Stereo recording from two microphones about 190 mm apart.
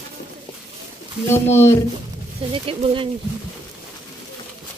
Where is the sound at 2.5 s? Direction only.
30° right (ahead or behind).